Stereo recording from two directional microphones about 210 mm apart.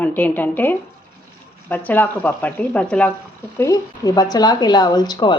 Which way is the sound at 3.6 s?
15° left (ahead or behind).